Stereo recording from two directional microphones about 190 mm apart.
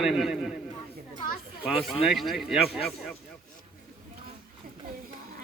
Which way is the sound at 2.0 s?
Centre (ahead or behind).